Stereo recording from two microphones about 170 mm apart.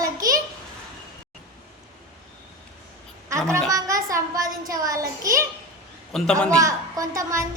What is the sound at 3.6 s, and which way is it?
Music, 20° right (ahead or behind).